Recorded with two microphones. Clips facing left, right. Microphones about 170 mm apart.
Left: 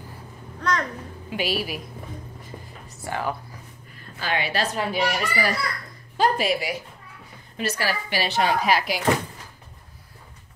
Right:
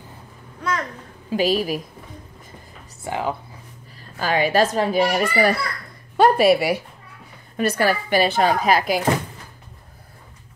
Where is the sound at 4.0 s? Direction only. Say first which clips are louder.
Right 6 dB; 40° right (ahead or behind).